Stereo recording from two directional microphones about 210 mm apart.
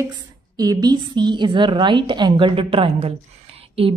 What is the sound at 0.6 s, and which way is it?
A woman's voice, 20° right (ahead or behind).